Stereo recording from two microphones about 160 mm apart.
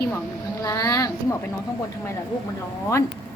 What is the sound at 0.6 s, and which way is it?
Speech, 20° left (ahead or behind).